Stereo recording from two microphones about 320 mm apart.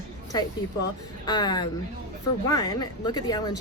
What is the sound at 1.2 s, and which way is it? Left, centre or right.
Speech, centre.